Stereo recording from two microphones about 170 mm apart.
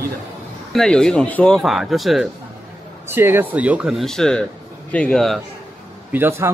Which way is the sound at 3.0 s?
15° right (ahead or behind).